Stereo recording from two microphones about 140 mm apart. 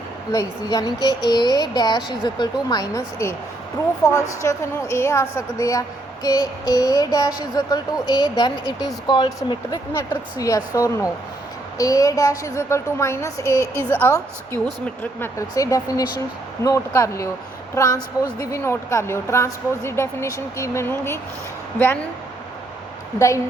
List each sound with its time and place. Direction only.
0.3 s speech: 25° left (ahead or behind)
9.9 s speech: 20° left (ahead or behind)
15.2 s speech: 25° left (ahead or behind)
23.1 s speech: 20° left (ahead or behind)